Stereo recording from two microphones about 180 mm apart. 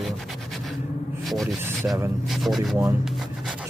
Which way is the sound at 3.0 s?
Centre (ahead or behind).